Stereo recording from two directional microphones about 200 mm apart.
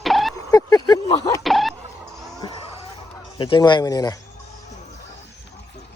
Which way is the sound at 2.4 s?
30° left (ahead or behind).